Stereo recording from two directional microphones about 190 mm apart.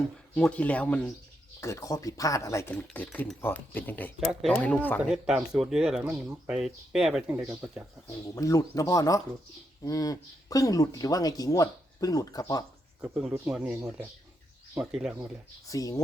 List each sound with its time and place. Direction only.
0.3 s speech: 5° left (ahead or behind)
5.0 s speech: 5° right (ahead or behind)
8.4 s speech: 15° left (ahead or behind)
13.0 s speech: 5° right (ahead or behind)
15.6 s speech: 20° left (ahead or behind)